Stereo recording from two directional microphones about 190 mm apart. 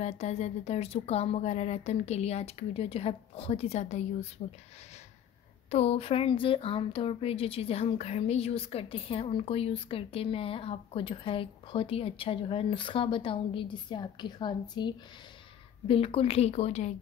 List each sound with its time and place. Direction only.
0.0 s speech: 35° left (ahead or behind)
5.7 s speech: 35° left (ahead or behind)